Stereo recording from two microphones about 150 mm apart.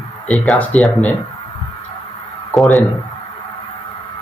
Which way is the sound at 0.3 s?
5° left (ahead or behind).